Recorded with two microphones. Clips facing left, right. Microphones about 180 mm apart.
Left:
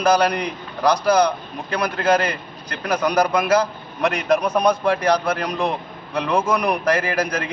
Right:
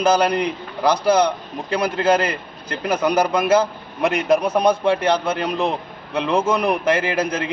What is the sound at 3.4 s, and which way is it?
Speech, 25° right (ahead or behind).